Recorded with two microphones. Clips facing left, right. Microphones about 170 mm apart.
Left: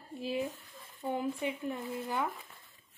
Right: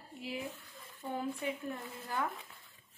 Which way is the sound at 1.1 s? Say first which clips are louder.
Left 2 dB; 15° left (ahead or behind).